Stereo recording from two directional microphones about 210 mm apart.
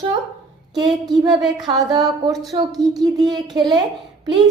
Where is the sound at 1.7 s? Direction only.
15° right (ahead or behind).